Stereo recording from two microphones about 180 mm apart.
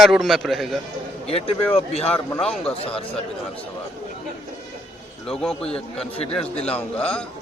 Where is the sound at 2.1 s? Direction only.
5° left (ahead or behind).